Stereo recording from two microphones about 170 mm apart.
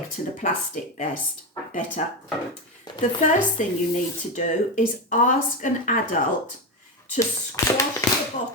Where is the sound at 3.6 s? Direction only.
45° left (ahead or behind).